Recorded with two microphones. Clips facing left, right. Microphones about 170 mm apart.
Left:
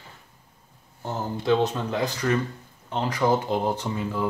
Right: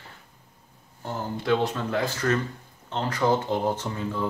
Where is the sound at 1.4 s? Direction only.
20° left (ahead or behind).